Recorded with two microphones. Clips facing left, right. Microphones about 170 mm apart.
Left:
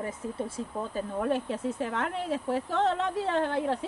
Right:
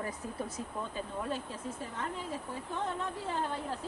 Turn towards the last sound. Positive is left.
turn(degrees=80)